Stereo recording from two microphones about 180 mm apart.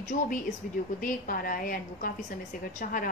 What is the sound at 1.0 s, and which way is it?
A woman's voice, 50° left (ahead or behind).